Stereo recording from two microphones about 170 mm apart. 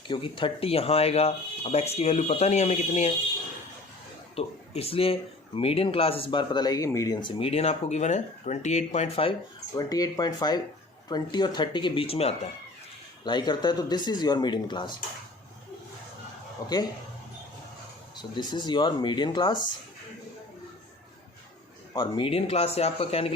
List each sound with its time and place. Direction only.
0.1 s speech: 30° left (ahead or behind)
4.4 s speech: 35° left (ahead or behind)
9.7 s speech: 20° left (ahead or behind)
13.2 s speech: 25° left (ahead or behind)
16.6 s speech: 25° left (ahead or behind)
18.2 s speech: 25° left (ahead or behind)
21.9 s speech: 30° left (ahead or behind)